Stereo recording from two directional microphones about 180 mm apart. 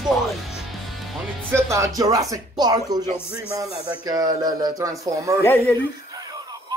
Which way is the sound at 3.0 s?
15° left (ahead or behind).